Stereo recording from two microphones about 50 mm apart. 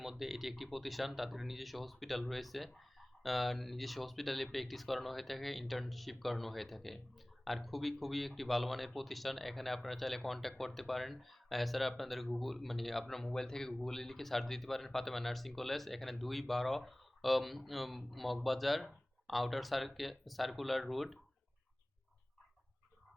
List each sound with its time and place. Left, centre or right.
0.0 s speech: centre